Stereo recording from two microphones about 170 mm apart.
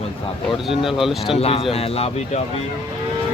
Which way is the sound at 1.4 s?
35° left (ahead or behind).